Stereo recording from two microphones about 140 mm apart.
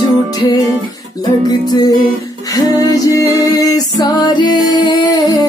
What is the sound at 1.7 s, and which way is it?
Music, 25° left (ahead or behind).